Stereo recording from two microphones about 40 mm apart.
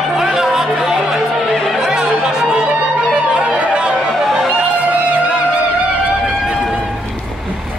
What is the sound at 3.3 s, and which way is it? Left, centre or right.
Music, right.